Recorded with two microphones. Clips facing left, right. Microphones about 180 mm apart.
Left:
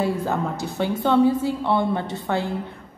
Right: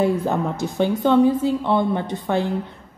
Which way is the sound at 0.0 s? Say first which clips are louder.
Right 3 dB; 20° right (ahead or behind).